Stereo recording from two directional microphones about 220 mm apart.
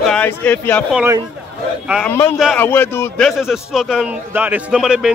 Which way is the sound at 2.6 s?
10° left (ahead or behind).